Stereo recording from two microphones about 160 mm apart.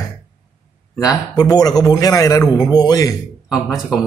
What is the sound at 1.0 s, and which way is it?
A man's voice, 25° left (ahead or behind).